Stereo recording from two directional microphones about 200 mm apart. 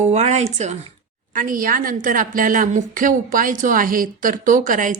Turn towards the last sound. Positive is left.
turn(degrees=-40)  # may be behind; listen again after turning